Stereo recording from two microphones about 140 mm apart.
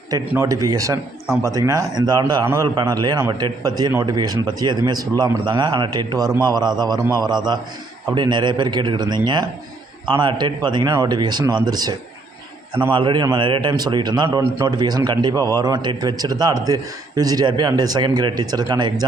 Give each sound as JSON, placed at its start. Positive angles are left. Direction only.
{"t": 0.1, "sound": "a man's voice", "side_deg": -25}